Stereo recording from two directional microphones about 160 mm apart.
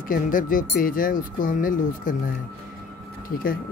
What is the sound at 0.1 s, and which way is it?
Speech, 60° left (ahead or behind).